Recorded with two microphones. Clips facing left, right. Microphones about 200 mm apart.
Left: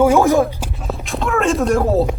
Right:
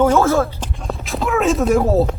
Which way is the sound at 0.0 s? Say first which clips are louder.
Left 2 dB; 10° left (ahead or behind).